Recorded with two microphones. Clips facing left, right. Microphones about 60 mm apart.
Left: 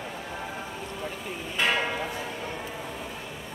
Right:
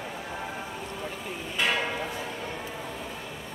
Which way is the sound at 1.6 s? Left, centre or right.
Left.